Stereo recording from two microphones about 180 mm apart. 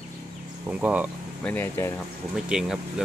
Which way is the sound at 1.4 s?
10° left (ahead or behind).